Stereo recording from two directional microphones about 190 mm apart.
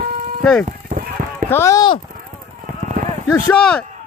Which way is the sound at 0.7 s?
45° right (ahead or behind).